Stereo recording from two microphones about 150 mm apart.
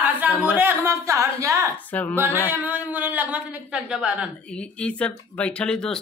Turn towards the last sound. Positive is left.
turn(degrees=5)  # may be behind; listen again after turning